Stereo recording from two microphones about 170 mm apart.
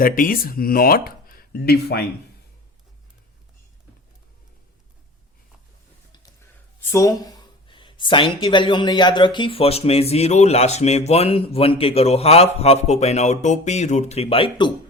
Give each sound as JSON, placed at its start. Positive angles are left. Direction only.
{"t": 0.0, "sound": "speech", "side_deg": 55}
{"t": 6.9, "sound": "speech", "side_deg": 20}